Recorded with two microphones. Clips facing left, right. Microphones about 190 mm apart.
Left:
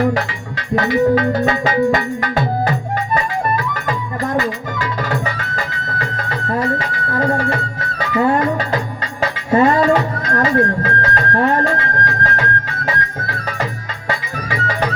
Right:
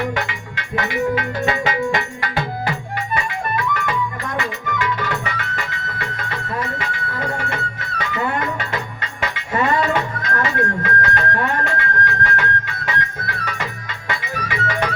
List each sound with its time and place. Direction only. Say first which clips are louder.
0.0 s music: left 6 dB; 35° left (ahead or behind)
6.5 s music: left 8 dB; 35° left (ahead or behind)